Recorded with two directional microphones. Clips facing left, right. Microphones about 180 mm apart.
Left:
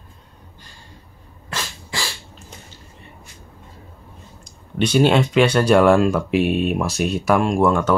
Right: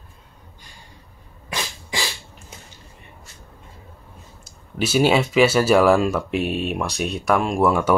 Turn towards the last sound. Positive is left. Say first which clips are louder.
# left 2 dB
turn(degrees=-5)  # may be behind; listen again after turning